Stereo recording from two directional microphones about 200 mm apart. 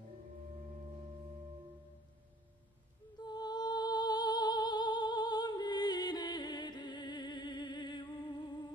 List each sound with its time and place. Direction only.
3.2 s music: 20° left (ahead or behind)